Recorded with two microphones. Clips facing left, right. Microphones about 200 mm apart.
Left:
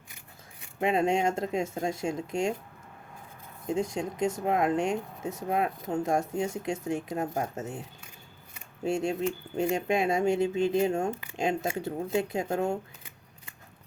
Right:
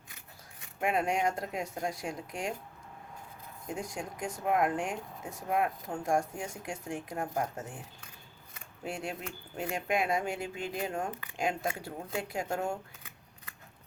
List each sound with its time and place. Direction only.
0.8 s speech: 25° left (ahead or behind)
3.7 s speech: 25° left (ahead or behind)